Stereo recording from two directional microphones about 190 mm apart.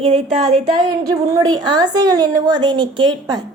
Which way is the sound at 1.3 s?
20° right (ahead or behind).